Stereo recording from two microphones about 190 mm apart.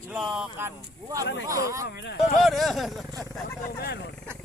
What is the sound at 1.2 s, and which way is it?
Speech, 65° left (ahead or behind).